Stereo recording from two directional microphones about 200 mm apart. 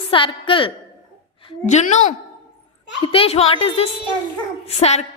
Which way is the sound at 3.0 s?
30° left (ahead or behind).